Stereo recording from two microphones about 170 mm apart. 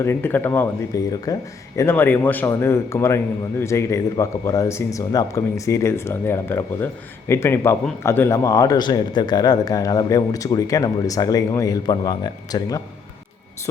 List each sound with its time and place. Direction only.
0.0 s speech: 15° left (ahead or behind)